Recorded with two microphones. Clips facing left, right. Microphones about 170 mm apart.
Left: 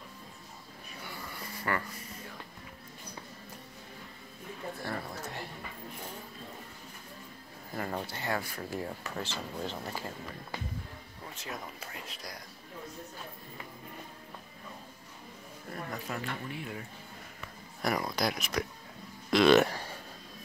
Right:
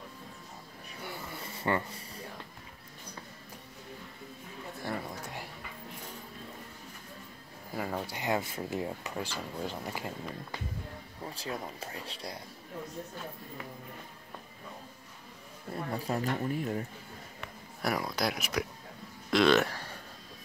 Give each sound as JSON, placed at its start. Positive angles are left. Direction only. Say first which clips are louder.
{"t": 1.6, "sound": "speech", "louder": "right 3 dB", "side_deg": -25}
{"t": 4.8, "sound": "a sound", "louder": "right 3 dB", "side_deg": -15}
{"t": 7.7, "sound": "a sound", "louder": "right 1 dB", "side_deg": -5}
{"t": 8.2, "sound": "speech", "louder": "right 3 dB", "side_deg": -20}
{"t": 11.2, "sound": "speech", "louder": "right 4 dB", "side_deg": -30}
{"t": 15.7, "sound": "speech", "louder": "right 5 dB", "side_deg": -30}
{"t": 17.8, "sound": "speech", "louder": "even", "side_deg": -5}
{"t": 19.3, "sound": "speech", "louder": "left 2 dB", "side_deg": 10}